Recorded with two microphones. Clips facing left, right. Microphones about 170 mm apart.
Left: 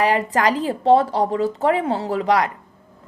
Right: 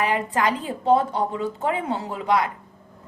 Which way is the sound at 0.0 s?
90° left.